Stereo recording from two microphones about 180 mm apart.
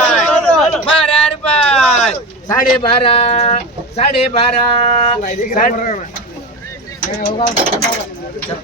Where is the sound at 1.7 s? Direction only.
Centre (ahead or behind).